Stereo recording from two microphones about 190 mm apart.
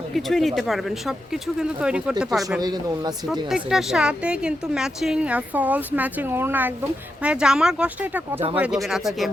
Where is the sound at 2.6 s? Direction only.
20° right (ahead or behind).